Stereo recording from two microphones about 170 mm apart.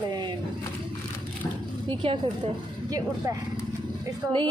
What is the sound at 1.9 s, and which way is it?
Speech, 30° right (ahead or behind).